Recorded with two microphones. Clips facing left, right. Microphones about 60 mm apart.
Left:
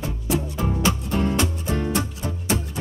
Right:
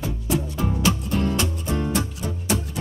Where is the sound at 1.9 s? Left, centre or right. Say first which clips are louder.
Even; left.